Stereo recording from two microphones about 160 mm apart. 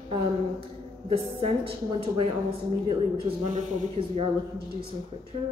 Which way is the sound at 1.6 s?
35° right (ahead or behind).